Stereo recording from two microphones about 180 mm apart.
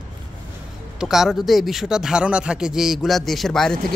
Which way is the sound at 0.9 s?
Centre (ahead or behind).